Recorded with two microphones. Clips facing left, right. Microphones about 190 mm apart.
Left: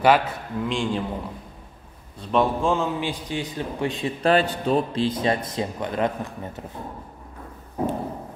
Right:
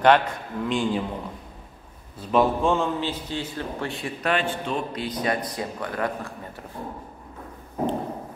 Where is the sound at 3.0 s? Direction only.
15° left (ahead or behind).